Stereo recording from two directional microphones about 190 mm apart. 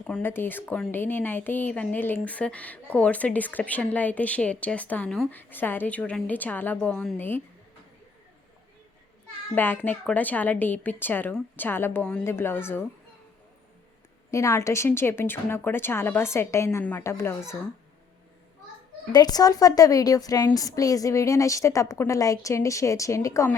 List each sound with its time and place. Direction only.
0.1 s speech: 10° left (ahead or behind)
9.6 s speech: 10° left (ahead or behind)
14.3 s speech: 15° left (ahead or behind)
19.1 s speech: 20° left (ahead or behind)